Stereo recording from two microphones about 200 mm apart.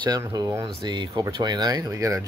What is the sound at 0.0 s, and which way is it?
Speech, 20° right (ahead or behind).